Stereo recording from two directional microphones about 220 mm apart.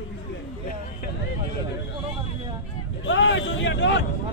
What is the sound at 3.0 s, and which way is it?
Speech, 55° left (ahead or behind).